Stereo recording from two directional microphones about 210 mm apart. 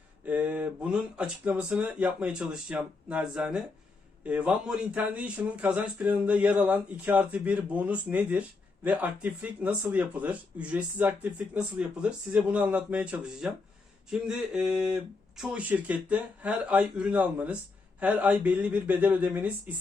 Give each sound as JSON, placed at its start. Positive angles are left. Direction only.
{"t": 0.3, "sound": "speech", "side_deg": -5}